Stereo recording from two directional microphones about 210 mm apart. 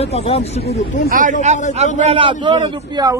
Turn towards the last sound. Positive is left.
turn(degrees=-20)  # may be behind; listen again after turning